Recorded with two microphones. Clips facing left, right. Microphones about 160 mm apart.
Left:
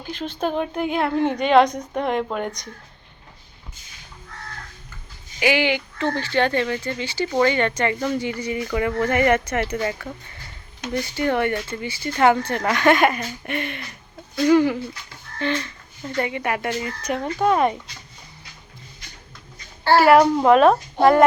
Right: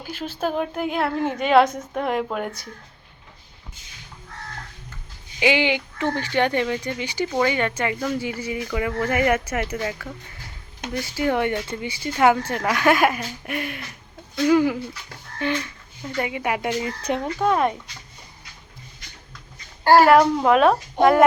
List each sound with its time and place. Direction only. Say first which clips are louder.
0.0 s speech: left 1 dB; 5° right (ahead or behind)
5.4 s speech: even; 20° right (ahead or behind)
17.3 s speech: left 3 dB; 5° left (ahead or behind)
19.8 s a woman's voice: right 2 dB; 45° right (ahead or behind)
20.2 s speech: left 2 dB; 5° left (ahead or behind)